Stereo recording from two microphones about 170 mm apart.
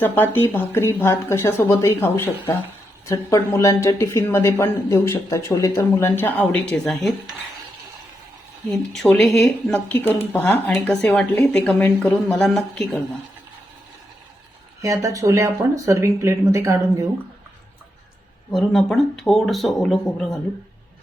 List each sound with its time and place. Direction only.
0.0 s speech: 10° left (ahead or behind)
8.7 s a woman's voice: centre (ahead or behind)
14.8 s speech: 20° right (ahead or behind)
18.5 s a woman's voice: centre (ahead or behind)